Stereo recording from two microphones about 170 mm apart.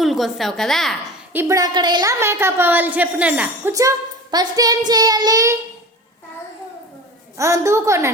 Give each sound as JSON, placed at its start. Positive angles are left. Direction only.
{"t": 0.0, "sound": "a woman's voice", "side_deg": 0}
{"t": 1.3, "sound": "a woman's voice", "side_deg": -15}
{"t": 3.7, "sound": "child singing", "side_deg": -20}
{"t": 7.3, "sound": "a woman's voice", "side_deg": -15}